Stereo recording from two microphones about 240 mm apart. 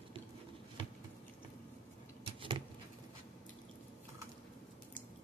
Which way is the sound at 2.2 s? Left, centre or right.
Right.